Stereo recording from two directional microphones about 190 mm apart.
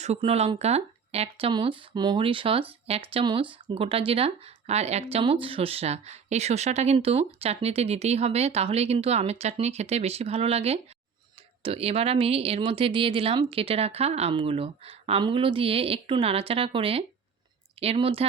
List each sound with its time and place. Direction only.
0.0 s speech: 35° right (ahead or behind)